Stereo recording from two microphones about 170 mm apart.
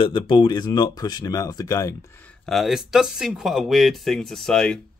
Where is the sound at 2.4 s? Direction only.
Centre (ahead or behind).